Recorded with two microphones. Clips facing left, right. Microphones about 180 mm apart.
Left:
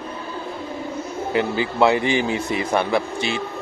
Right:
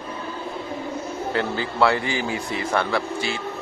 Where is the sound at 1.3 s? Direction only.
15° left (ahead or behind).